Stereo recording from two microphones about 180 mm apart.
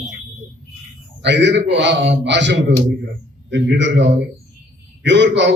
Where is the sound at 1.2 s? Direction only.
75° right (ahead or behind).